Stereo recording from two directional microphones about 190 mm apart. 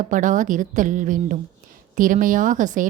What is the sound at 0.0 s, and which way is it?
A woman's voice, 45° right (ahead or behind).